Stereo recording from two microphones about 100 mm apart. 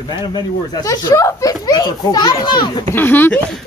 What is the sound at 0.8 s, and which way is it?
A child's voice, 35° left (ahead or behind).